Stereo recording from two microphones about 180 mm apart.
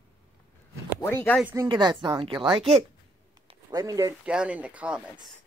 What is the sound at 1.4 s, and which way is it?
A woman's voice, 15° right (ahead or behind).